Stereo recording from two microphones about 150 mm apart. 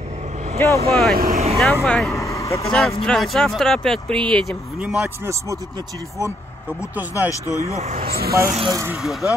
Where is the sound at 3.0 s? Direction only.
5° left (ahead or behind).